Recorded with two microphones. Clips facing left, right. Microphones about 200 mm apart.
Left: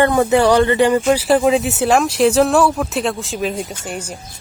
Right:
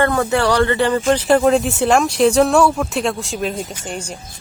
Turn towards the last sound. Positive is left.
turn(degrees=5)  # may be behind; listen again after turning